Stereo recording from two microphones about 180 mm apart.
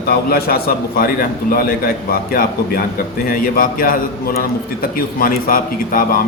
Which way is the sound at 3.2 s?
55° left (ahead or behind).